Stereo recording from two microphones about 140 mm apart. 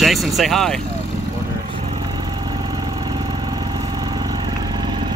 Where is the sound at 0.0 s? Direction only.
Centre (ahead or behind).